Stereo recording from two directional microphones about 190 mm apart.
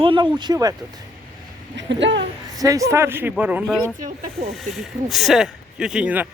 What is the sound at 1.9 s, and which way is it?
Speech, 70° right (ahead or behind).